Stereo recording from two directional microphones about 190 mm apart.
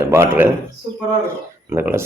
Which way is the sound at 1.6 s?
10° right (ahead or behind).